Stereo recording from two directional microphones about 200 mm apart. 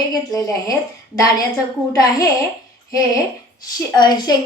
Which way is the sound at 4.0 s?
20° left (ahead or behind).